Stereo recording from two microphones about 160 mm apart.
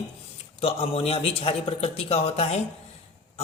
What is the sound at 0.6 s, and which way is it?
A man's voice, 40° left (ahead or behind).